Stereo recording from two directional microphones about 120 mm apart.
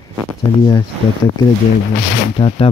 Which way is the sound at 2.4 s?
45° left (ahead or behind).